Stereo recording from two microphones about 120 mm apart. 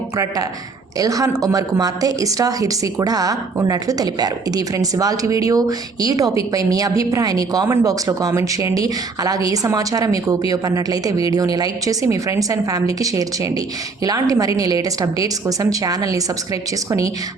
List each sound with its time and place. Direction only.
0.9 s a woman's voice: 30° right (ahead or behind)